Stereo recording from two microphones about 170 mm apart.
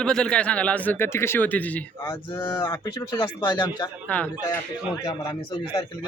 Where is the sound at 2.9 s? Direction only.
25° left (ahead or behind).